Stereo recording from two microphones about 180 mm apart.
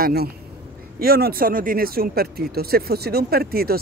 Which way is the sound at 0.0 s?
60° right (ahead or behind).